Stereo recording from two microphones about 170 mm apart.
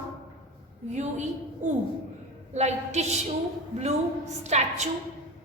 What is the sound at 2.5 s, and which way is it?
Speech, 40° right (ahead or behind).